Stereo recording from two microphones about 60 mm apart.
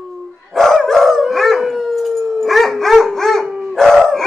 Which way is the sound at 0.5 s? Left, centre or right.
Centre.